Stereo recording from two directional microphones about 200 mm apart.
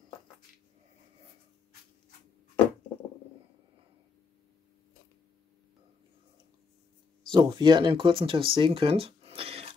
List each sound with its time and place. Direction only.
7.3 s speech: 20° right (ahead or behind)